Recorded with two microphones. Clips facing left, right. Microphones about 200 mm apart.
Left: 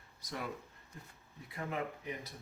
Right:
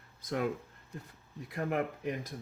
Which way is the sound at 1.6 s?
60° right (ahead or behind).